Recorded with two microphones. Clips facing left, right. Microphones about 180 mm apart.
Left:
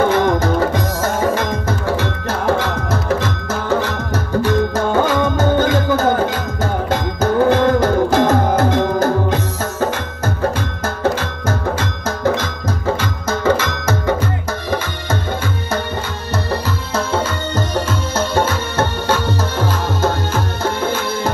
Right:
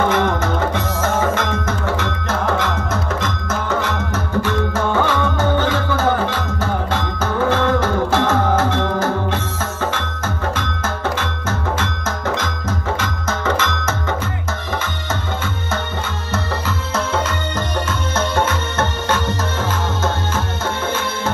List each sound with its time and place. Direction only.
0.1 s music: 35° left (ahead or behind)
13.3 s music: 35° left (ahead or behind)
18.1 s music: 30° left (ahead or behind)